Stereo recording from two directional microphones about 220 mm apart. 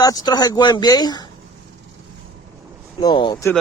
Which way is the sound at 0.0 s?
15° left (ahead or behind).